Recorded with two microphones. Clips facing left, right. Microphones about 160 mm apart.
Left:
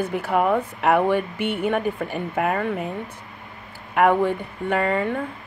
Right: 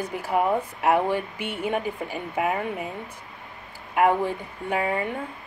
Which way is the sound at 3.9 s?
65° left (ahead or behind).